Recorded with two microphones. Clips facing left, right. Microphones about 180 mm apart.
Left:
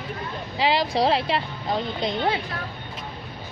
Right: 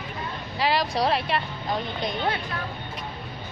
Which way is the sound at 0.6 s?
25° left (ahead or behind).